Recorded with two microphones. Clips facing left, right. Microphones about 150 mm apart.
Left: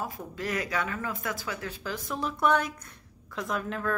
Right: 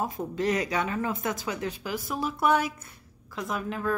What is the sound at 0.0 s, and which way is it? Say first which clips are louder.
Speech: right 6 dB; 25° right (ahead or behind).